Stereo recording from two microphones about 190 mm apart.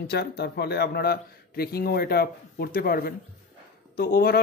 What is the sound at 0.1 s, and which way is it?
A man's voice, 60° left (ahead or behind).